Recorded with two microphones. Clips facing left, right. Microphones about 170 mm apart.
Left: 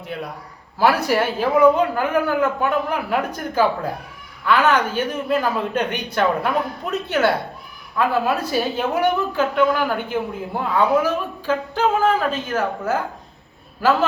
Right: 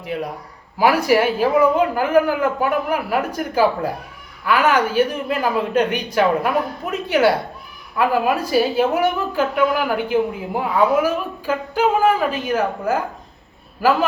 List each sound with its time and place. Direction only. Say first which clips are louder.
0.8 s a woman's voice: right 2 dB; 10° right (ahead or behind)